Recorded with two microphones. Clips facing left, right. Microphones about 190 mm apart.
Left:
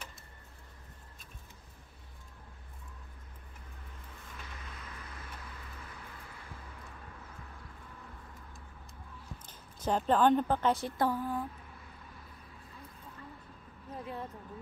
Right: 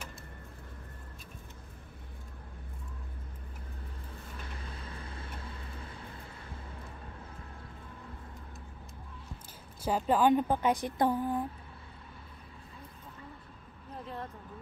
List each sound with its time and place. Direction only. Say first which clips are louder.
4.6 s vehicle: right 4 dB; 30° right (ahead or behind)
9.8 s a woman's voice: even; 10° right (ahead or behind)
14.0 s a sound: even; 5° left (ahead or behind)